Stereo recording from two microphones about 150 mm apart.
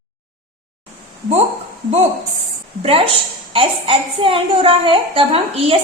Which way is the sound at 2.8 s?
40° right (ahead or behind).